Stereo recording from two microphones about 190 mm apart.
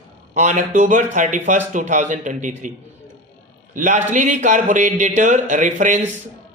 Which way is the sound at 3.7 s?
40° right (ahead or behind).